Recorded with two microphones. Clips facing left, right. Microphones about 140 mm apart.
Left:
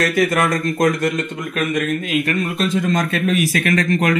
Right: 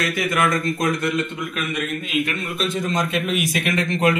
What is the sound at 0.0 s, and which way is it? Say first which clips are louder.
Speech: left 4 dB; 40° left (ahead or behind).